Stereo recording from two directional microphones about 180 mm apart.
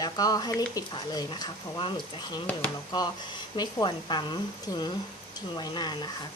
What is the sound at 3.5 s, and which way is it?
Speech, 25° left (ahead or behind).